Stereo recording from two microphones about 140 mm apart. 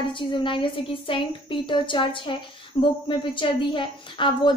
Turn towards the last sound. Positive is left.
turn(degrees=35)  # may be behind; listen again after turning